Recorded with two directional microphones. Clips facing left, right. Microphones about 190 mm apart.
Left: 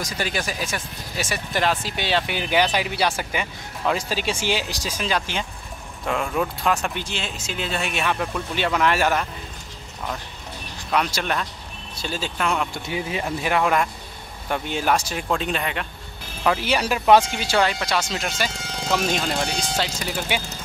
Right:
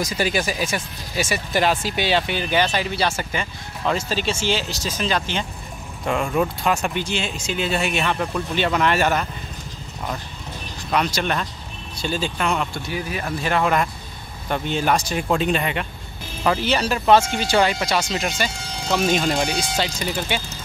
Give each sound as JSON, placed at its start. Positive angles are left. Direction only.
{"t": 0.0, "sound": "speech", "side_deg": -5}
{"t": 2.3, "sound": "speech", "side_deg": 10}
{"t": 6.0, "sound": "speech", "side_deg": -5}
{"t": 10.9, "sound": "speech", "side_deg": 5}
{"t": 12.7, "sound": "speech", "side_deg": 20}
{"t": 13.2, "sound": "speech", "side_deg": 10}
{"t": 16.4, "sound": "speech", "side_deg": 10}
{"t": 17.6, "sound": "speech", "side_deg": -5}